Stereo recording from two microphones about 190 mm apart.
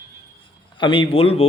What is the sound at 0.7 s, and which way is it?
Speech, 25° left (ahead or behind).